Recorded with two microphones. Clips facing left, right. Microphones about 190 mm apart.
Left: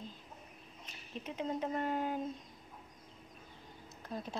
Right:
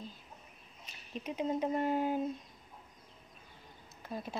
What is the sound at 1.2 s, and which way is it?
Speech, 15° right (ahead or behind).